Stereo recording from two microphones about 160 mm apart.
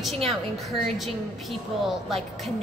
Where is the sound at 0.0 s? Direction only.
Centre (ahead or behind).